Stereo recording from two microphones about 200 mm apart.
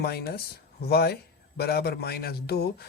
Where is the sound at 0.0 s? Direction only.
50° left (ahead or behind).